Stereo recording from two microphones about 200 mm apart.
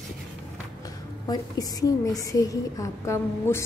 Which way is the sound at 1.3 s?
20° left (ahead or behind).